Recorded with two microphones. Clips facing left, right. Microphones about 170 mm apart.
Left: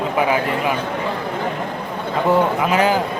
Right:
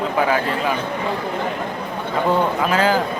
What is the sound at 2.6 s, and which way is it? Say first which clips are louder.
Speech: left 1 dB; 20° left (ahead or behind).